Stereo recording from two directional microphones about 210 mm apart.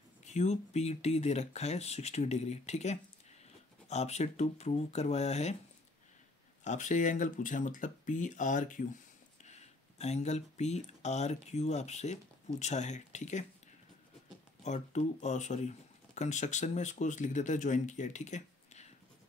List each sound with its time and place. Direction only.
0.2 s speech: 35° left (ahead or behind)
6.6 s speech: 35° left (ahead or behind)
14.6 s speech: 35° left (ahead or behind)